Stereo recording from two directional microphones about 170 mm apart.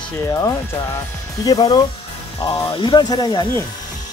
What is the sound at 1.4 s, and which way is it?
Speech, 25° left (ahead or behind).